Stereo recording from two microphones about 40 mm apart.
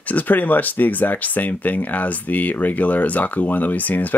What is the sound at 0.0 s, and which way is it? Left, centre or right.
Speech, left.